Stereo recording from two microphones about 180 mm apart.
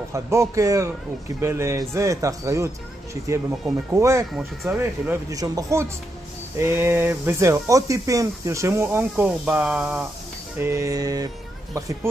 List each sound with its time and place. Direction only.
0.1 s speech: 15° right (ahead or behind)
3.9 s speech: 15° right (ahead or behind)
4.4 s speech: 5° right (ahead or behind)
10.6 s speech: 15° right (ahead or behind)